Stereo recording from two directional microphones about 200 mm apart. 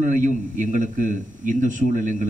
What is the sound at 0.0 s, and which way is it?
A man's voice, 40° right (ahead or behind).